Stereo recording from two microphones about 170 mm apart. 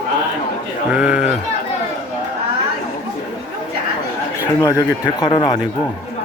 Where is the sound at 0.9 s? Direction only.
5° right (ahead or behind).